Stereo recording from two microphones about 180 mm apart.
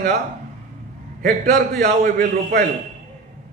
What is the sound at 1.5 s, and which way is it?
Speech, 40° right (ahead or behind).